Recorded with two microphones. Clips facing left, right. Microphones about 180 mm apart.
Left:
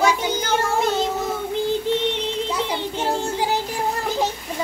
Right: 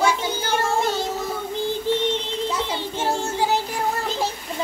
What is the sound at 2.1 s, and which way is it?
Child singing, 15° left (ahead or behind).